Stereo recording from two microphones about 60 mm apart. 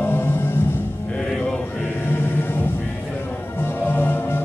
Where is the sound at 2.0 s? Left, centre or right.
Left.